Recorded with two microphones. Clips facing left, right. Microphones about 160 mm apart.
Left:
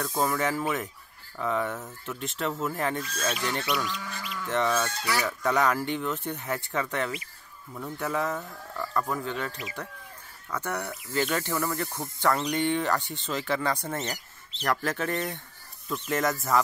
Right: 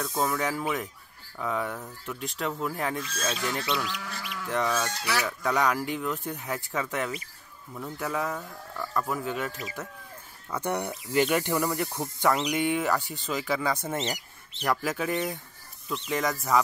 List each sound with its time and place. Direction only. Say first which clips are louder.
0.0 s speech: left 1 dB; centre (ahead or behind)
3.6 s speech: left 1 dB; 25° right (ahead or behind)
3.9 s speech: left 1 dB; 10° right (ahead or behind)
10.5 s speech: right 3 dB; 15° right (ahead or behind)
13.9 s speech: right 2 dB; 20° right (ahead or behind)
14.6 s speech: even; 5° right (ahead or behind)